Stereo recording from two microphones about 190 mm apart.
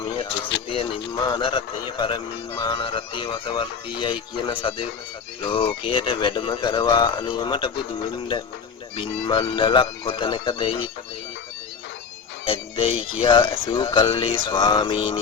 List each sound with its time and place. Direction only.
0.0 s a sound: 25° left (ahead or behind)
0.7 s speech: 30° left (ahead or behind)
12.5 s speech: 30° left (ahead or behind)